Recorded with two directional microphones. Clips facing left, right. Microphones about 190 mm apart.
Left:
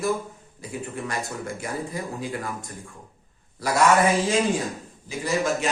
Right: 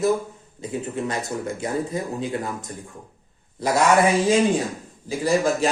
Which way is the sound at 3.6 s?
20° right (ahead or behind).